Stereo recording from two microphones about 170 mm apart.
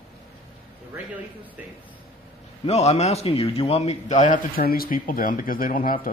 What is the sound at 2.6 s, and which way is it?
A man's voice, 40° left (ahead or behind).